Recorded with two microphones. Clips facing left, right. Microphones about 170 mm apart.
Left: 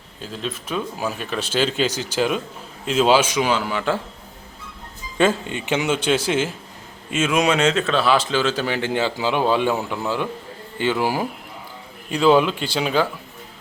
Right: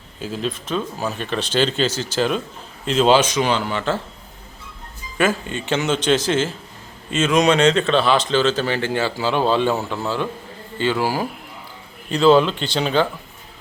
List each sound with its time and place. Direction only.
0.2 s speech: centre (ahead or behind)
5.1 s speech: 25° left (ahead or behind); by 13.1 s 5° left (ahead or behind)